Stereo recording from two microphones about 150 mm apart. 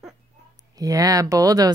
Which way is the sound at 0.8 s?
25° right (ahead or behind).